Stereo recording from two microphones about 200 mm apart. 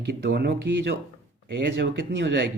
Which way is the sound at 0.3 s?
55° right (ahead or behind).